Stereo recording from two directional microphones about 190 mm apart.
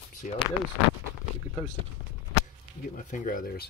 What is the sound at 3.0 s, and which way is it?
Speech, 40° left (ahead or behind).